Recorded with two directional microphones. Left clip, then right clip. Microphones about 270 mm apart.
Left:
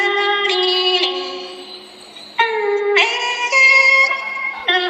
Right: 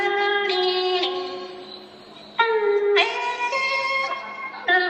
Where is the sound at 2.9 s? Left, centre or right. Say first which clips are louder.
Left 5 dB; left.